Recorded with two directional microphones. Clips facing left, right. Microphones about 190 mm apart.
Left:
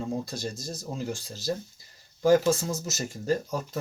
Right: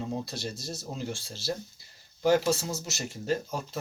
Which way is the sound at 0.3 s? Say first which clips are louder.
Left 2 dB; 45° left (ahead or behind).